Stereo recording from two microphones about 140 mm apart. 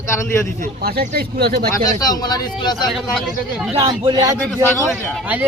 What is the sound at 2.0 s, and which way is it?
Speech, 30° left (ahead or behind).